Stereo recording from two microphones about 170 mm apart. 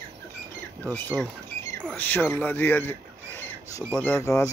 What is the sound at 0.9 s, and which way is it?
Speech, 10° left (ahead or behind).